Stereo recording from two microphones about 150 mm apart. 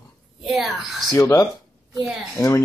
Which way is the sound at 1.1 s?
20° left (ahead or behind).